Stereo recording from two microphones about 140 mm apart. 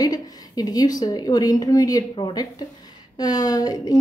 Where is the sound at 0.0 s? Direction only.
25° left (ahead or behind).